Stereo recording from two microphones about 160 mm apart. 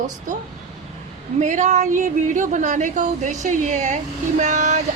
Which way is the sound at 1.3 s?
50° right (ahead or behind).